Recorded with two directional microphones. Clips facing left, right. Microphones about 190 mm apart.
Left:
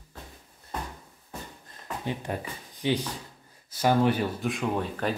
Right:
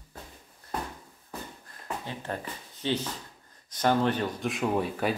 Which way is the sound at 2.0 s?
15° left (ahead or behind).